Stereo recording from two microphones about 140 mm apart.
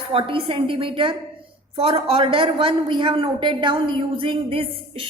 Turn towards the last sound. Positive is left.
turn(degrees=-40)  # may be behind; listen again after turning